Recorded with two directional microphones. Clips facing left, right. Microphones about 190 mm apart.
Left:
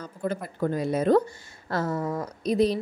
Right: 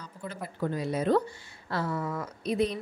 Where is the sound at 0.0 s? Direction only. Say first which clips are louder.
Left 8 dB; 50° left (ahead or behind).